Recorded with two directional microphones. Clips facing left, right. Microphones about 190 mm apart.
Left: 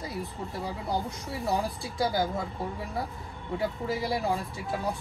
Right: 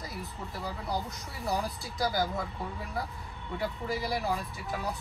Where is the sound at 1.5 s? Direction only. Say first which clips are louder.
Left 2 dB; 25° left (ahead or behind).